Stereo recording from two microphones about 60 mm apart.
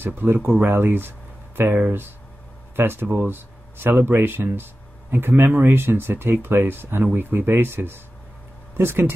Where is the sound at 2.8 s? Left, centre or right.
Right.